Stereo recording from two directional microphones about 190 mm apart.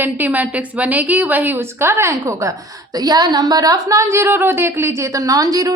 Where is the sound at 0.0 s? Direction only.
10° right (ahead or behind).